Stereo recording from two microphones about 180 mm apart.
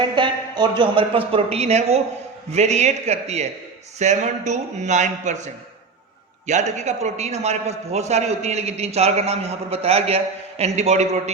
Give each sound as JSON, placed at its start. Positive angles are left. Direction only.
{"t": 0.2, "sound": "a man's voice", "side_deg": -25}
{"t": 6.5, "sound": "a man's voice", "side_deg": -40}